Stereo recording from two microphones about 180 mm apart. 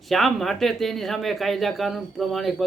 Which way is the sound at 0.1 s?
Centre (ahead or behind).